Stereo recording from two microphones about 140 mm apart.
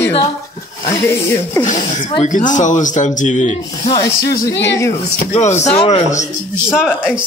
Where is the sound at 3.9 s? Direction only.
25° left (ahead or behind).